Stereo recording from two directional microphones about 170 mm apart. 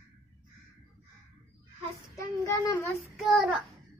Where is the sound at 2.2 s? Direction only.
15° left (ahead or behind).